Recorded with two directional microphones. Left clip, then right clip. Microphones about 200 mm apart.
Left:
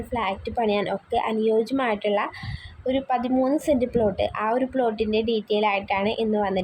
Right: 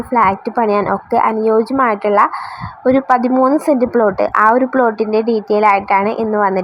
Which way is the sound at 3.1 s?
Centre (ahead or behind).